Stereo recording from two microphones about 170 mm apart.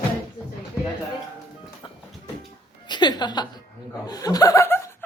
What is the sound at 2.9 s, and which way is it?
A woman's voice, 25° left (ahead or behind).